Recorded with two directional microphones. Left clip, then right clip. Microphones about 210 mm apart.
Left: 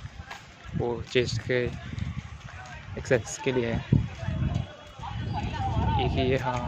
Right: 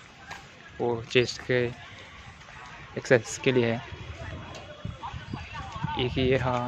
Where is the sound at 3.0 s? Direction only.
20° right (ahead or behind).